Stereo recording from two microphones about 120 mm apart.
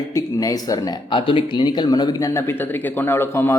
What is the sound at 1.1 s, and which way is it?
Speech, 45° left (ahead or behind).